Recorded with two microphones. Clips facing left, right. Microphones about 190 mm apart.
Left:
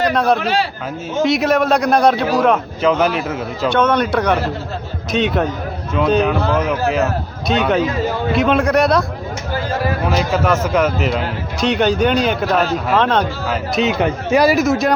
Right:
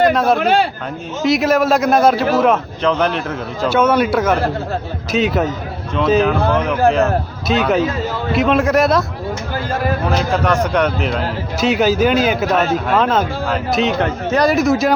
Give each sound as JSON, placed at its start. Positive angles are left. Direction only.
{"t": 0.0, "sound": "a man's voice", "side_deg": 0}
{"t": 0.3, "sound": "a man's voice", "side_deg": -55}
{"t": 1.2, "sound": "a man's voice", "side_deg": 0}
{"t": 3.8, "sound": "a man's voice", "side_deg": -5}
{"t": 10.1, "sound": "a man's voice", "side_deg": 5}